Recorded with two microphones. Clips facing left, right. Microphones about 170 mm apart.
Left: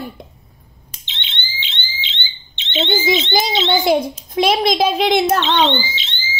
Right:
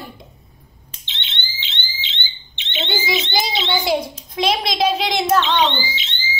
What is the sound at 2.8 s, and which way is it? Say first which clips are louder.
Bird: left 6 dB; 45° left (ahead or behind).